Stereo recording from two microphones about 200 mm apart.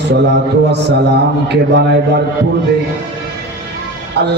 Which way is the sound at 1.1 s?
55° right (ahead or behind).